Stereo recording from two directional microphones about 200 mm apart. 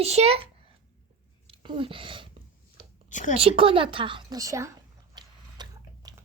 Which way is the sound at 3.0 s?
40° left (ahead or behind).